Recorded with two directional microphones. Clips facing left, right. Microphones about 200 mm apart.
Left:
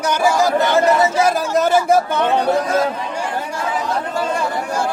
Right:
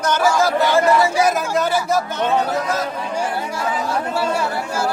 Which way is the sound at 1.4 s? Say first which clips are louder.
Left 4 dB; 45° left (ahead or behind).